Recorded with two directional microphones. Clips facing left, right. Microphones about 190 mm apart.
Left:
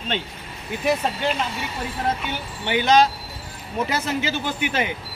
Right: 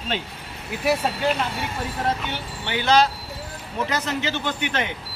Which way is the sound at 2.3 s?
15° left (ahead or behind).